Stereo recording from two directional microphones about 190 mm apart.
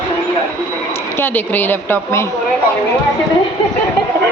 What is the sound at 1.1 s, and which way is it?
A woman's voice, 10° left (ahead or behind).